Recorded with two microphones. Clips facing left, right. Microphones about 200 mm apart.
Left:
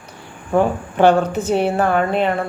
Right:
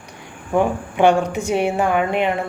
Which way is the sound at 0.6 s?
15° right (ahead or behind).